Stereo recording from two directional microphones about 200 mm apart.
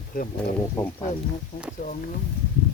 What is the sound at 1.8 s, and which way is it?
Speech, 40° left (ahead or behind).